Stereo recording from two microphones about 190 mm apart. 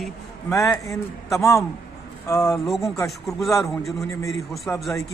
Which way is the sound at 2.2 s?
15° left (ahead or behind).